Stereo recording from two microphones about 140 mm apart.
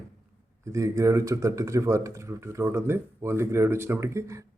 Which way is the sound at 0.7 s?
20° right (ahead or behind).